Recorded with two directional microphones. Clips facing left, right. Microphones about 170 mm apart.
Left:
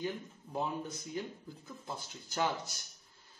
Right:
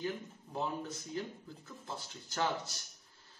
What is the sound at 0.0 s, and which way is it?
Speech, 10° left (ahead or behind).